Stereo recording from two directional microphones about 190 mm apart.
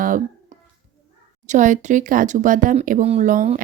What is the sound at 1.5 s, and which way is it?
Speech, 40° right (ahead or behind).